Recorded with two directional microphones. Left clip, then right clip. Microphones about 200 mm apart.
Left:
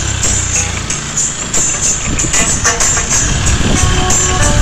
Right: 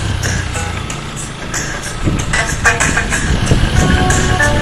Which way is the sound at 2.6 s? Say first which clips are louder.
Right 1 dB; 15° left (ahead or behind).